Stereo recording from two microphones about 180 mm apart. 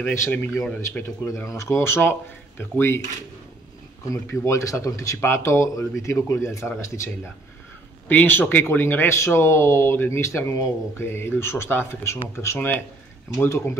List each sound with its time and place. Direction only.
0.1 s speech: 15° left (ahead or behind)
4.1 s speech: 15° left (ahead or behind)
8.1 s speech: 10° left (ahead or behind)